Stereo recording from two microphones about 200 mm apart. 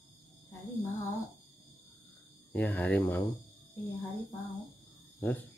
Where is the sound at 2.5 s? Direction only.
5° left (ahead or behind).